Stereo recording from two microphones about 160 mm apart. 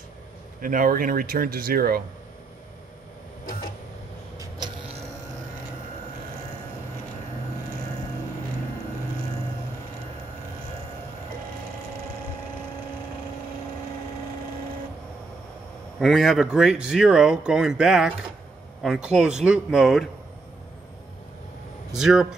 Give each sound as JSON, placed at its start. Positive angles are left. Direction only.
{"t": 0.6, "sound": "speech", "side_deg": -60}
{"t": 16.0, "sound": "a man's voice", "side_deg": 0}
{"t": 21.9, "sound": "speech", "side_deg": -5}